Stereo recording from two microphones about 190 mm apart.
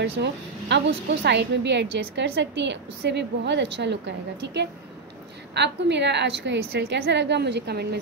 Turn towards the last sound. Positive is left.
turn(degrees=-60)  # may be behind; listen again after turning